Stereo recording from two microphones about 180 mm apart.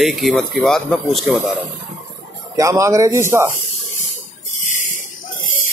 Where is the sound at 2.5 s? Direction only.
15° right (ahead or behind).